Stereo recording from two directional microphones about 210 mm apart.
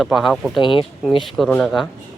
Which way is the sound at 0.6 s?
25° left (ahead or behind).